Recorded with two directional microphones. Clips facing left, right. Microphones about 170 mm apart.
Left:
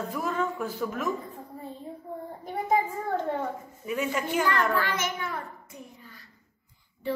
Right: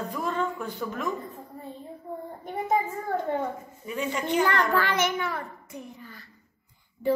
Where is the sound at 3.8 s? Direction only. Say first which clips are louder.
Even; 5° left (ahead or behind).